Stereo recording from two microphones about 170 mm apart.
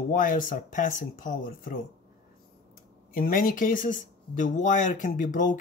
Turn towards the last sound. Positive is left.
turn(degrees=50)  # may be behind; listen again after turning